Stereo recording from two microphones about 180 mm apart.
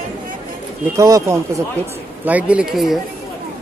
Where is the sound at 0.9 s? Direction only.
15° right (ahead or behind); by 3.0 s centre (ahead or behind).